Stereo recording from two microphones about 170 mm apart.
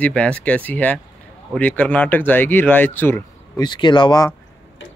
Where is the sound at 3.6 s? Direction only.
25° left (ahead or behind).